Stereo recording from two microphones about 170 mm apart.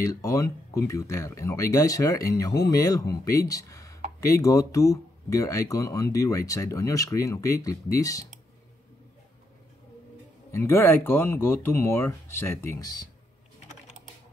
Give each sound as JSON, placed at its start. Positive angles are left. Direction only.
{"t": 0.0, "sound": "speech", "side_deg": 20}
{"t": 10.5, "sound": "speech", "side_deg": 15}